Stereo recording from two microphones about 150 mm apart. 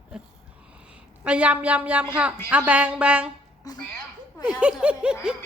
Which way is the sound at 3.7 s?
25° left (ahead or behind).